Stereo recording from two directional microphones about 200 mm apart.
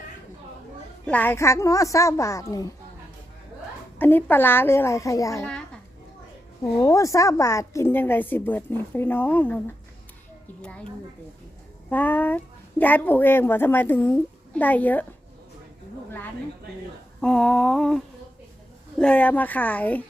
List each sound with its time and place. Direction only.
1.0 s a woman's voice: 10° left (ahead or behind)
3.9 s a woman's voice: 10° left (ahead or behind)
6.7 s a woman's voice: 15° left (ahead or behind)
10.6 s a woman's voice: 5° left (ahead or behind)
11.9 s a woman's voice: 10° left (ahead or behind)
17.2 s humming: 5° left (ahead or behind)
18.9 s a woman's voice: 5° left (ahead or behind)